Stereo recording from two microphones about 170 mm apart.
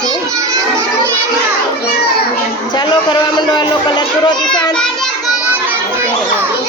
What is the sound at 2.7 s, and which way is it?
A child's voice, 25° left (ahead or behind).